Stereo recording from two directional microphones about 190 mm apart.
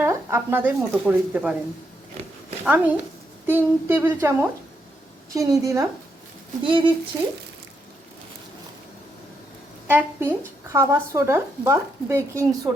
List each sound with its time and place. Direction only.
0.0 s speech: 15° right (ahead or behind)
2.6 s speech: 10° right (ahead or behind); by 6.9 s 25° right (ahead or behind)
9.8 s speech: 10° right (ahead or behind)